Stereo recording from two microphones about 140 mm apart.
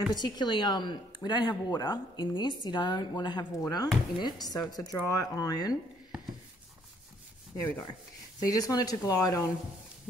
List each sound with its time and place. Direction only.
0.1 s speech: 30° left (ahead or behind)
8.4 s speech: 25° left (ahead or behind)